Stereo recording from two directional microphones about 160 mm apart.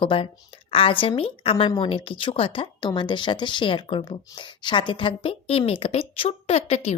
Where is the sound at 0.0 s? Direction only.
35° left (ahead or behind).